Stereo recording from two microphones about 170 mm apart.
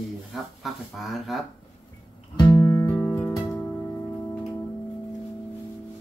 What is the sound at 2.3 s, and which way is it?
Music, 20° left (ahead or behind).